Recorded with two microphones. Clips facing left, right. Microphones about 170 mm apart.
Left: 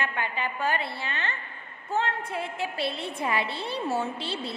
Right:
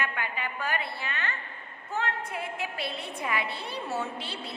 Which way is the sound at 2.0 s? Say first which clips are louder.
Left 3 dB; 30° left (ahead or behind).